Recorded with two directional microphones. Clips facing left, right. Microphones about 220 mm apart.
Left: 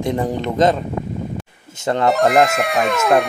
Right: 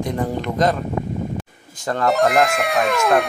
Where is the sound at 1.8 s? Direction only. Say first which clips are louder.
Left 3 dB; 25° left (ahead or behind).